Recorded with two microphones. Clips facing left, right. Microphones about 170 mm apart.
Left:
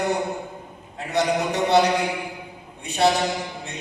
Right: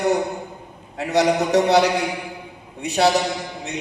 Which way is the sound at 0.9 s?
75° right (ahead or behind).